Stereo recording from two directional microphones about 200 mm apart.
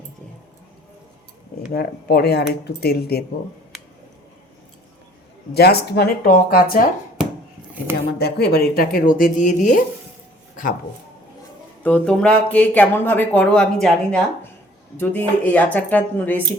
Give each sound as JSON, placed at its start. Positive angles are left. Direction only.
{"t": 1.7, "sound": "speech", "side_deg": 50}
{"t": 5.5, "sound": "speech", "side_deg": 55}
{"t": 8.2, "sound": "speech", "side_deg": 55}
{"t": 11.8, "sound": "speech", "side_deg": 5}